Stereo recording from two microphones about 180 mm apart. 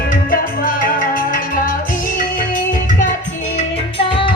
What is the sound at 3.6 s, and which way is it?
Music, 30° left (ahead or behind).